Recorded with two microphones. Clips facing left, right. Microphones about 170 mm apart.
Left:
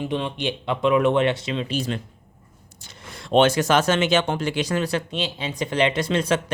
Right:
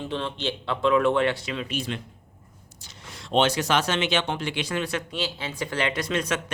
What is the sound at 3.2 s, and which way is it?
Speech, 55° left (ahead or behind).